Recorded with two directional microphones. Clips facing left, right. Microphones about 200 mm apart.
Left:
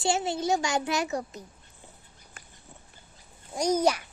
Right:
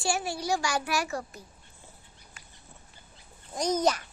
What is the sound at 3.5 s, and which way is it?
Speech, 10° left (ahead or behind).